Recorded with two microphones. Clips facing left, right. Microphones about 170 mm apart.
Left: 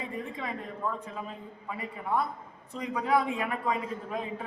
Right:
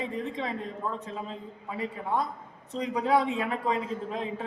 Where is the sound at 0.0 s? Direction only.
25° right (ahead or behind).